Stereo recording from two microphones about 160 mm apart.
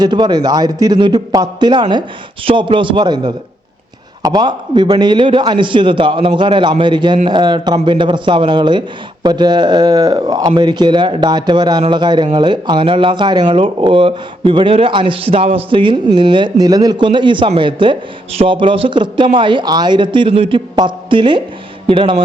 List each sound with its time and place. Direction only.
0.0 s speech: 25° right (ahead or behind)